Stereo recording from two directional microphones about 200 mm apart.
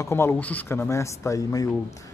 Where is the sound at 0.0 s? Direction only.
10° left (ahead or behind).